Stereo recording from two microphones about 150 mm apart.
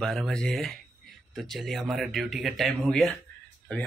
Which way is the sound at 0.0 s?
Centre (ahead or behind).